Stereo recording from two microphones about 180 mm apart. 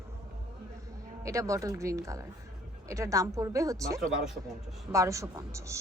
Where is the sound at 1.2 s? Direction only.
15° right (ahead or behind).